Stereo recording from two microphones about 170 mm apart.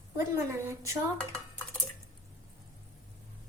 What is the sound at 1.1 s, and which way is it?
Dishes, 5° left (ahead or behind).